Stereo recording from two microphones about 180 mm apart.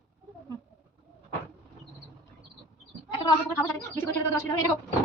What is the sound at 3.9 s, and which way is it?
Speech, 15° left (ahead or behind).